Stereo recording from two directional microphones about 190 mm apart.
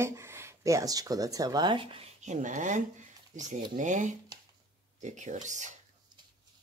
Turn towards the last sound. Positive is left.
turn(degrees=-40)  # may be behind; listen again after turning